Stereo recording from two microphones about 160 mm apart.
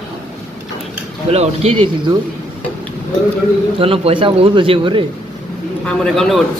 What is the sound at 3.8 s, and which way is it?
A man's voice, 35° right (ahead or behind).